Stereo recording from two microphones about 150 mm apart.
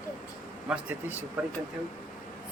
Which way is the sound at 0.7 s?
10° right (ahead or behind).